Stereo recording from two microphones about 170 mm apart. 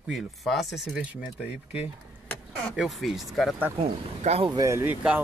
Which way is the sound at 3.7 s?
35° right (ahead or behind).